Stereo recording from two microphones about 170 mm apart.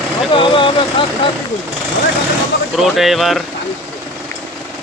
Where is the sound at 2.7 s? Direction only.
Centre (ahead or behind).